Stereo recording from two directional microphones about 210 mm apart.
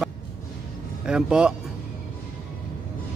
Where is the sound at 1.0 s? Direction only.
5° right (ahead or behind).